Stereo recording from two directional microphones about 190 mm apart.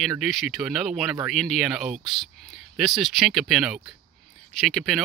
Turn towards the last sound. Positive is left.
turn(degrees=0)  # may be behind; listen again after turning